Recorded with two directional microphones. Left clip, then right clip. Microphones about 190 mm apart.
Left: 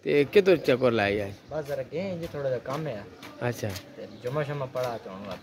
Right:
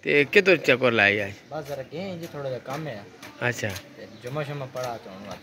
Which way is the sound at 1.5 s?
25° left (ahead or behind).